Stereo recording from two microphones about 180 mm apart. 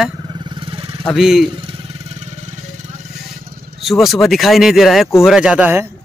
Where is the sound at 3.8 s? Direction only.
Centre (ahead or behind).